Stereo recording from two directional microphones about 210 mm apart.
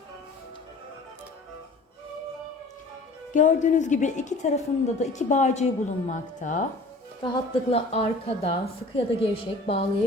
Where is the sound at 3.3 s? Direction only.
35° left (ahead or behind).